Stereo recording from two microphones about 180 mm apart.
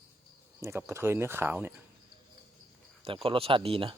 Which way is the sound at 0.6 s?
15° right (ahead or behind).